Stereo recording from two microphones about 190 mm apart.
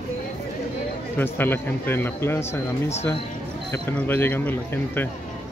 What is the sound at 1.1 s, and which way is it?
Speech, 10° left (ahead or behind).